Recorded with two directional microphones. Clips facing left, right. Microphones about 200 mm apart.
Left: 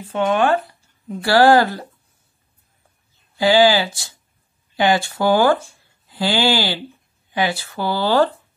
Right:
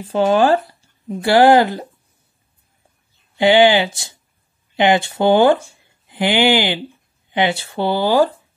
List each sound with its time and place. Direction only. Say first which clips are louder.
0.0 s speech: right 4 dB; 30° right (ahead or behind)
1.0 s speech: right 2 dB; 20° right (ahead or behind)
3.3 s speech: right 2 dB; 20° right (ahead or behind)